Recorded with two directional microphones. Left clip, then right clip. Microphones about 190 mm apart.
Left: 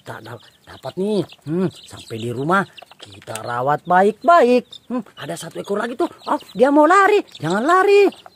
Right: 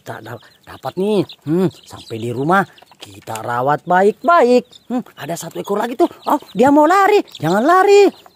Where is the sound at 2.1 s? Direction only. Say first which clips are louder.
Right 3 dB; 15° right (ahead or behind).